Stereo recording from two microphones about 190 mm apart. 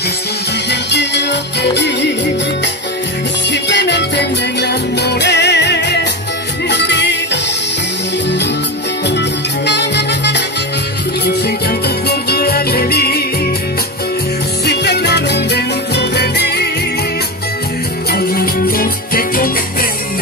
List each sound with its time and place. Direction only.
0.7 s music: 65° left (ahead or behind)
3.6 s music: 65° left (ahead or behind)
9.7 s music: 65° left (ahead or behind)
12.1 s music: 55° left (ahead or behind)
14.7 s music: 60° left (ahead or behind)
18.1 s music: 50° left (ahead or behind)